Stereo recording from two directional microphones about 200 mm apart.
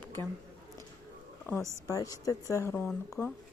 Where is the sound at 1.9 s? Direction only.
15° left (ahead or behind).